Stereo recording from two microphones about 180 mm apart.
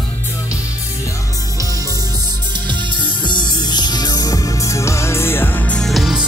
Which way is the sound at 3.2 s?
25° left (ahead or behind).